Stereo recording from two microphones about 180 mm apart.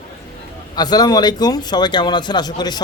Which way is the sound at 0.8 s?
20° left (ahead or behind).